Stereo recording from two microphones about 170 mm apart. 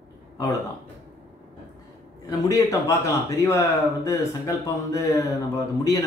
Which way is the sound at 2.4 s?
20° left (ahead or behind).